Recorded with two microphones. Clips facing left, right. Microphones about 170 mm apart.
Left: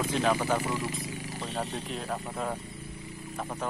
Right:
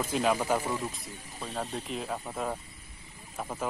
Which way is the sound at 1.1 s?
85° left.